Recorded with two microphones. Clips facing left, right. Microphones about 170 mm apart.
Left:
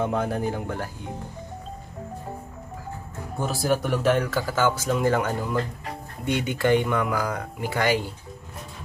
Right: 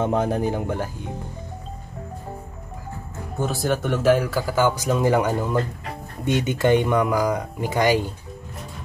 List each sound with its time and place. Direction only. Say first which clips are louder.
0.0 s speech: right 3 dB; 25° right (ahead or behind)
3.3 s speech: right 1 dB; centre (ahead or behind); by 8.0 s 20° right (ahead or behind)